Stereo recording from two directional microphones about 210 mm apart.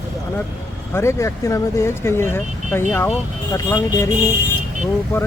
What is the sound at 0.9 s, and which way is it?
Speech, 15° left (ahead or behind).